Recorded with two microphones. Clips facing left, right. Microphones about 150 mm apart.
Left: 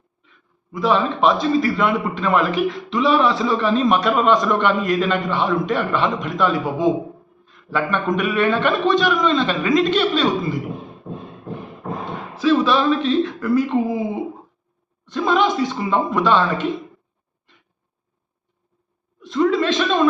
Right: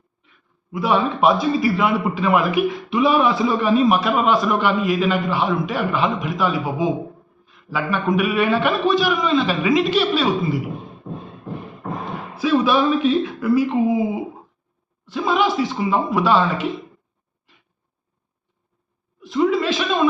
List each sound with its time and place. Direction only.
0.7 s a man's voice: 10° right (ahead or behind)
12.3 s a man's voice: 10° right (ahead or behind)
15.0 s a man's voice: 5° right (ahead or behind)
19.2 s a man's voice: 5° right (ahead or behind)